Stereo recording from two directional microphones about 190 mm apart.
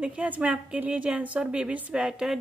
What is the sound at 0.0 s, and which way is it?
A woman's voice, 5° right (ahead or behind).